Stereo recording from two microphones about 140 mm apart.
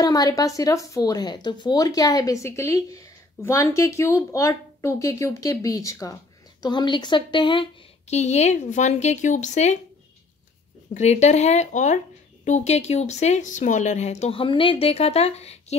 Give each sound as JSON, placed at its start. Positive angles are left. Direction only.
{"t": 0.0, "sound": "speech", "side_deg": 25}
{"t": 8.1, "sound": "speech", "side_deg": 55}
{"t": 10.9, "sound": "speech", "side_deg": 55}
{"t": 14.2, "sound": "speech", "side_deg": 40}